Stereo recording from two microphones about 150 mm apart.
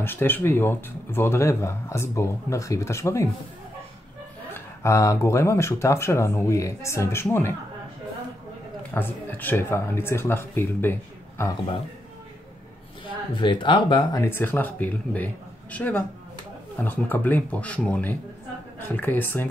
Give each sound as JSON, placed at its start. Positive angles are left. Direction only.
{"t": 0.0, "sound": "speech", "side_deg": 15}
{"t": 4.5, "sound": "speech", "side_deg": 15}
{"t": 8.9, "sound": "speech", "side_deg": 15}
{"t": 13.4, "sound": "speech", "side_deg": 30}
{"t": 14.2, "sound": "speech", "side_deg": 15}